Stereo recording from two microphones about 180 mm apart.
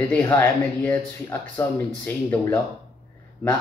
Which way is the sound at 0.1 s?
15° left (ahead or behind).